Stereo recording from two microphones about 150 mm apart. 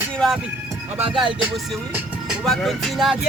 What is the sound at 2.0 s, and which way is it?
Music, 5° right (ahead or behind).